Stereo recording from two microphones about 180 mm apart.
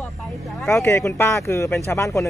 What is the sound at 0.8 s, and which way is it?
Speech, 15° left (ahead or behind).